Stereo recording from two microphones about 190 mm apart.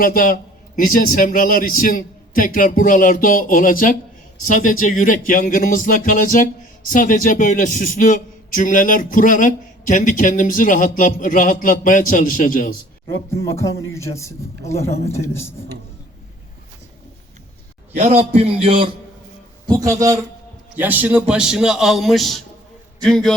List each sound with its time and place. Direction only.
0.0 s speech: 45° left (ahead or behind)
13.3 s a man's voice: 15° left (ahead or behind)
17.9 s music: 35° right (ahead or behind)
19.6 s a man's voice: 15° right (ahead or behind); by 23.3 s 5° left (ahead or behind)